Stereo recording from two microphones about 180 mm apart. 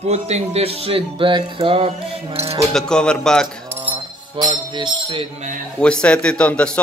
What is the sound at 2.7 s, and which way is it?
Speech, 5° left (ahead or behind).